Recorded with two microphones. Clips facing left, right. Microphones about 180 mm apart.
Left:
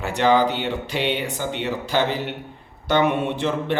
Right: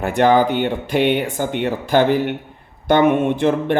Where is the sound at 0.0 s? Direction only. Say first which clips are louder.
Right 4 dB; 50° right (ahead or behind).